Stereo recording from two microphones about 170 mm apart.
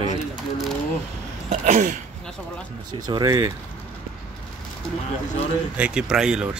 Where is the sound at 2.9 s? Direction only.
25° right (ahead or behind).